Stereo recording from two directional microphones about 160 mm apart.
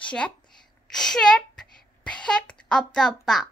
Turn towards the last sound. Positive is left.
turn(degrees=5)  # may be behind; listen again after turning